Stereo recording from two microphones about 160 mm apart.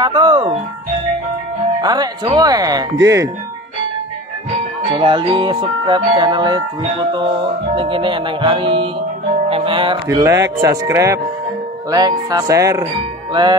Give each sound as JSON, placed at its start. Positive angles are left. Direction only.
{"t": 0.0, "sound": "speech", "side_deg": -30}
{"t": 1.8, "sound": "music", "side_deg": -25}
{"t": 2.2, "sound": "speech", "side_deg": -25}
{"t": 4.8, "sound": "speech", "side_deg": -35}
{"t": 6.8, "sound": "music", "side_deg": -30}
{"t": 10.0, "sound": "speech", "side_deg": -20}